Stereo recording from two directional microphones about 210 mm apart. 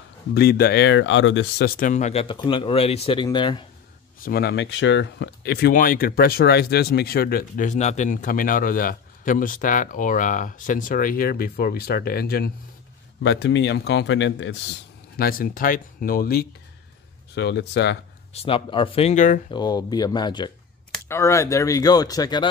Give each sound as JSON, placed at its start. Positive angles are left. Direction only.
{"t": 0.3, "sound": "speech", "side_deg": 50}
{"t": 4.2, "sound": "speech", "side_deg": 45}
{"t": 15.1, "sound": "speech", "side_deg": 45}
{"t": 18.3, "sound": "speech", "side_deg": 25}
{"t": 19.5, "sound": "speech", "side_deg": 20}